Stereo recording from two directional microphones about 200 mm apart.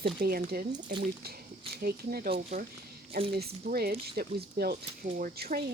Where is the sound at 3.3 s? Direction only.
50° right (ahead or behind).